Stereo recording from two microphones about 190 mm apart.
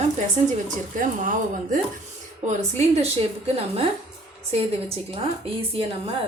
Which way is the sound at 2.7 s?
30° right (ahead or behind).